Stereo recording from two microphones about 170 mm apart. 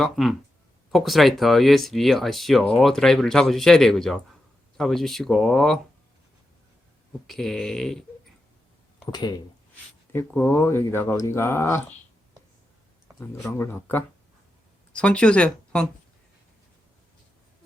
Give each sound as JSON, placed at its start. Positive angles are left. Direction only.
{"t": 0.0, "sound": "speech", "side_deg": 0}
{"t": 7.3, "sound": "speech", "side_deg": 0}
{"t": 9.1, "sound": "speech", "side_deg": 25}
{"t": 10.1, "sound": "speech", "side_deg": 10}
{"t": 13.1, "sound": "speech", "side_deg": 15}